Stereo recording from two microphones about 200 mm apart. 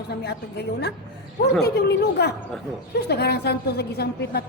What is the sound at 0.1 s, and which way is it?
A woman's voice, 55° left (ahead or behind).